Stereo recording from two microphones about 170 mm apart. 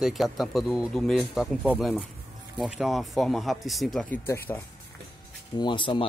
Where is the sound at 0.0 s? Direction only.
Centre (ahead or behind).